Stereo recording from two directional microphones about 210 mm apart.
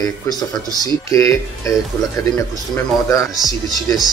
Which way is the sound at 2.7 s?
15° left (ahead or behind).